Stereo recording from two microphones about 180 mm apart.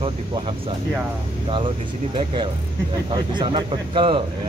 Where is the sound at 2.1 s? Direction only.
30° right (ahead or behind).